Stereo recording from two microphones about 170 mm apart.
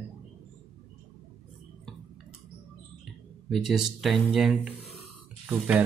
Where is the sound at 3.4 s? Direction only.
Centre (ahead or behind).